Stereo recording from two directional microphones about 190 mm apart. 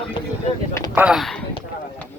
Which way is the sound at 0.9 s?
5° right (ahead or behind).